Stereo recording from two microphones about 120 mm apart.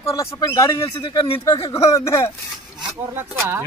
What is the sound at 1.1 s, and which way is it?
Speech, 45° left (ahead or behind).